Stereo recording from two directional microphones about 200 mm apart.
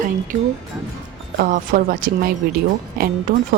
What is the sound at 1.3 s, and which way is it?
Speech, 45° right (ahead or behind).